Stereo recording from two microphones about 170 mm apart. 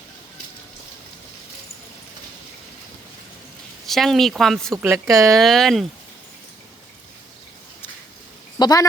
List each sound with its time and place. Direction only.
3.8 s speech: centre (ahead or behind)
4.7 s speech: 15° right (ahead or behind)
5.4 s speech: centre (ahead or behind)
8.5 s a woman's voice: 25° left (ahead or behind)